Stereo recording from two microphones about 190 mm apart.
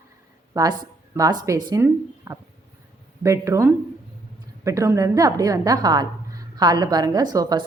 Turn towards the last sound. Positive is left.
turn(degrees=-20)  # may be behind; listen again after turning